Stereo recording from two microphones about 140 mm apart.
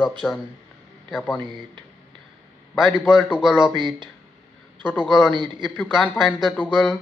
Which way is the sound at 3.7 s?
35° right (ahead or behind).